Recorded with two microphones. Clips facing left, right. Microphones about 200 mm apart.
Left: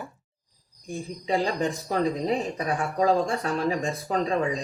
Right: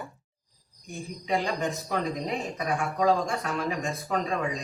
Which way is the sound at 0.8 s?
30° left (ahead or behind).